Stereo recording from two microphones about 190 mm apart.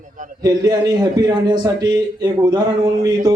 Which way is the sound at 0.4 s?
20° right (ahead or behind).